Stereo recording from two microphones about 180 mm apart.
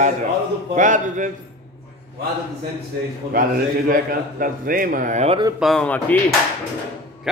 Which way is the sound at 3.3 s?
50° right (ahead or behind).